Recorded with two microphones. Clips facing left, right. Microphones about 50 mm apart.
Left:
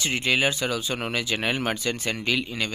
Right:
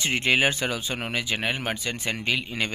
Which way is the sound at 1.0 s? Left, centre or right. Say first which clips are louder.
Left 1 dB; centre.